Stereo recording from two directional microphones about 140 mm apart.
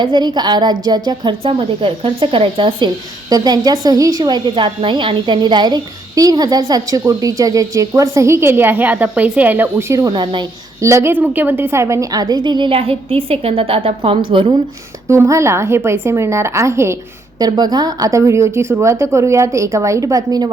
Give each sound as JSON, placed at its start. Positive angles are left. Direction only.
{"t": 0.0, "sound": "a woman's voice", "side_deg": -35}
{"t": 10.1, "sound": "a woman's voice", "side_deg": -35}
{"t": 10.8, "sound": "a woman's voice", "side_deg": -20}
{"t": 15.0, "sound": "a woman's voice", "side_deg": -20}
{"t": 17.4, "sound": "a woman's voice", "side_deg": -30}